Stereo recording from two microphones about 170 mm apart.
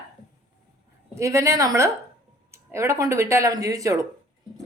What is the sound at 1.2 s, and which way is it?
A woman's voice, 15° right (ahead or behind).